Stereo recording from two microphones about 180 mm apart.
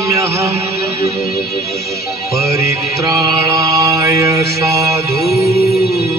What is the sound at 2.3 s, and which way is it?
Mantra, 15° right (ahead or behind).